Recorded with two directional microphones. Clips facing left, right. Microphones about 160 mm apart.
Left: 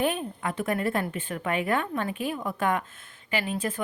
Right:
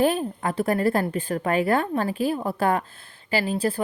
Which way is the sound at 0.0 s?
35° right (ahead or behind).